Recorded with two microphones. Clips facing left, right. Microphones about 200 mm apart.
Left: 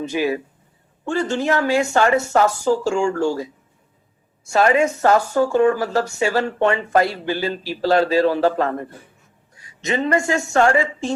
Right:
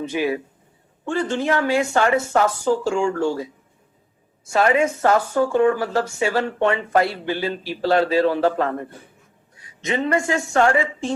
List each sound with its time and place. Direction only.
0.1 s speech: 40° left (ahead or behind)
4.5 s speech: 40° left (ahead or behind)
9.8 s speech: 40° left (ahead or behind)